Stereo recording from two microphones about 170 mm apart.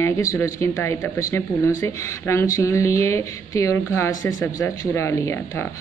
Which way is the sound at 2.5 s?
15° left (ahead or behind).